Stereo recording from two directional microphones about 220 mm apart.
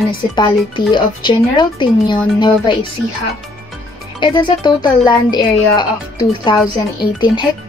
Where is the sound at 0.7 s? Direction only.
20° left (ahead or behind).